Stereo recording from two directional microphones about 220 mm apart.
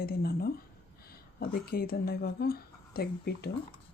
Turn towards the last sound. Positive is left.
turn(degrees=45)  # may be behind; listen again after turning